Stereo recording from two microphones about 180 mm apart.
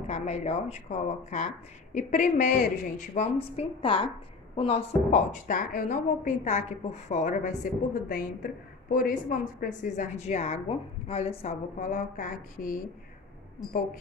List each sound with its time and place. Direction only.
0.1 s a woman's voice: 40° left (ahead or behind)
3.5 s a woman's voice: 30° left (ahead or behind); by 12.7 s 50° left (ahead or behind)